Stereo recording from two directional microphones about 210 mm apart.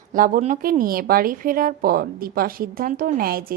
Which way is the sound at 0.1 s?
40° right (ahead or behind).